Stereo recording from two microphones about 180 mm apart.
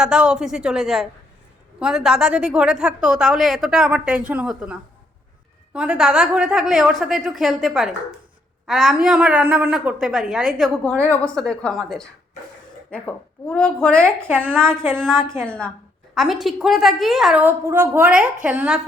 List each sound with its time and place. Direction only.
0.0 s a woman's voice: 5° right (ahead or behind)
10.8 s a woman's voice: 10° left (ahead or behind); by 18.8 s 5° right (ahead or behind)